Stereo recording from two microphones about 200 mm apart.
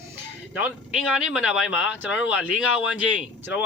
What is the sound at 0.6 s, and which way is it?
Speech, 5° right (ahead or behind).